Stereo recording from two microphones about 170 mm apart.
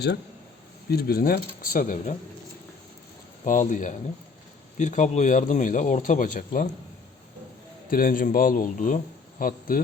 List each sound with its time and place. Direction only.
0.9 s a man's voice: 65° left (ahead or behind)
3.4 s speech: 50° left (ahead or behind)
7.9 s a man's voice: 55° left (ahead or behind)